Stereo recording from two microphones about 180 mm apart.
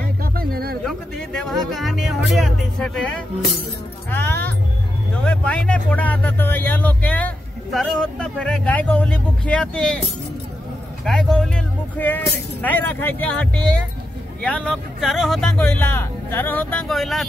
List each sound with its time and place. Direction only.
0.2 s a sound: 55° right (ahead or behind)
0.8 s speech: centre (ahead or behind)
4.1 s music: 10° left (ahead or behind)
5.1 s speech: 5° left (ahead or behind)
11.1 s speech: 5° left (ahead or behind)